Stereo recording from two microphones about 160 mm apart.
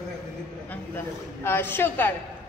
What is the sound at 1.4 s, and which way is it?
Speech, 15° left (ahead or behind).